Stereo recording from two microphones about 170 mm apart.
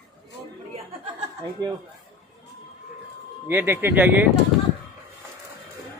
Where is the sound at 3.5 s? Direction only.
15° right (ahead or behind).